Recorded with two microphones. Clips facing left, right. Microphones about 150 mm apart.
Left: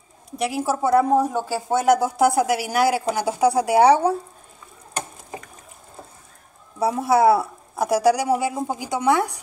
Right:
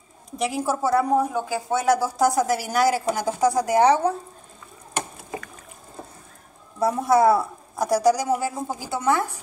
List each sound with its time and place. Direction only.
0.4 s speech: 5° left (ahead or behind)
0.8 s a woman's voice: 15° left (ahead or behind)
2.3 s a woman's voice: 5° left (ahead or behind)
6.8 s a woman's voice: 5° left (ahead or behind)